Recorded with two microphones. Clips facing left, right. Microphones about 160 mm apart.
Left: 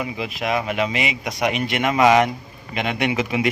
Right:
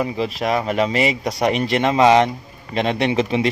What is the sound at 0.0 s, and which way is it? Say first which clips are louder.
Speech: right 5 dB; 35° right (ahead or behind).